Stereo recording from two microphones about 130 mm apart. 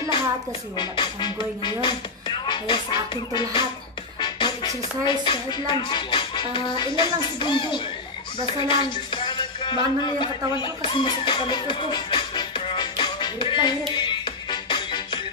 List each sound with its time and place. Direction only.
0.7 s speech: 35° left (ahead or behind)
4.2 s music: 35° left (ahead or behind)
5.2 s speech: 40° left (ahead or behind)
13.9 s music: 35° left (ahead or behind)